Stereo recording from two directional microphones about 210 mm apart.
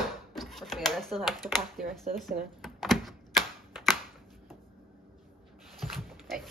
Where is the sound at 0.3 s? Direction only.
Centre (ahead or behind).